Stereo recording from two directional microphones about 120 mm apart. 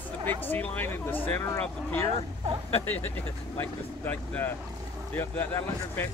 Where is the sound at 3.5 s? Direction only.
15° left (ahead or behind).